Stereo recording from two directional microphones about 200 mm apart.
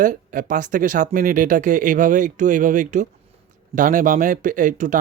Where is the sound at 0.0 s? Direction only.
40° right (ahead or behind).